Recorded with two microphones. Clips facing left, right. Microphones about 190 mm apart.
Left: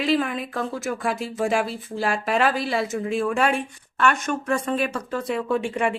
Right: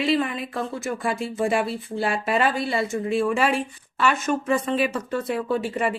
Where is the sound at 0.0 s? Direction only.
Centre (ahead or behind).